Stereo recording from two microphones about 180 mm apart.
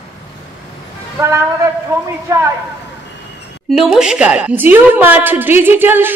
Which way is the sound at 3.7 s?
5° right (ahead or behind).